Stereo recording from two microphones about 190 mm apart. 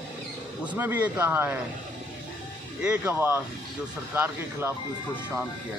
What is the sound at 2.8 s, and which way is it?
Speech, 10° right (ahead or behind).